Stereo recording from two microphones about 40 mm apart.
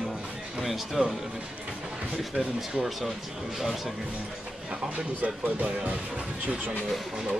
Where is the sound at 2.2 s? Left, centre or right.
Centre.